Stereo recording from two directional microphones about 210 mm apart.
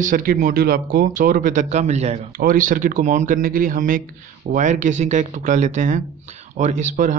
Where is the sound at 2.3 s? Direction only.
40° right (ahead or behind).